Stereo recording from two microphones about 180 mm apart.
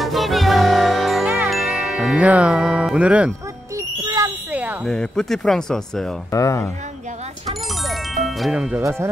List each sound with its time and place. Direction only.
0.0 s music: centre (ahead or behind)
3.7 s music: 20° right (ahead or behind)
4.5 s a sound: 10° right (ahead or behind)
4.8 s speech: 5° left (ahead or behind)
6.3 s speech: 20° left (ahead or behind)
7.9 s music: centre (ahead or behind)